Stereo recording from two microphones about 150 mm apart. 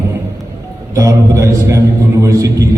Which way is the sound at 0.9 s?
20° right (ahead or behind).